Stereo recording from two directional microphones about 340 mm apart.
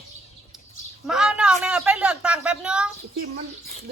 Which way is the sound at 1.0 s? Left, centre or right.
Centre.